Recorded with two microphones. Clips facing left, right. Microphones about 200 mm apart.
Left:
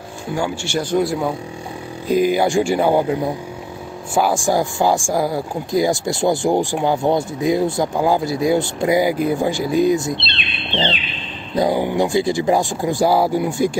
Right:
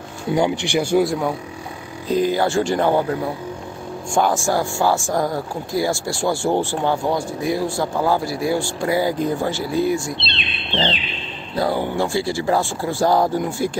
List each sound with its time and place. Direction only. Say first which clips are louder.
0.3 s speech: right 3 dB; 20° right (ahead or behind)
1.0 s speech: left 1 dB; centre (ahead or behind); by 10.1 s 20° left (ahead or behind)
11.5 s speech: left 3 dB; 15° left (ahead or behind)